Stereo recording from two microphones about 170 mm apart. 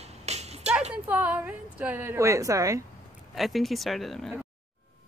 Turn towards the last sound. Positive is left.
turn(degrees=0)  # may be behind; listen again after turning